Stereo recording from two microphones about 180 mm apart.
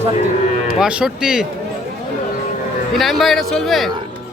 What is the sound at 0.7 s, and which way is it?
Speech, 5° right (ahead or behind).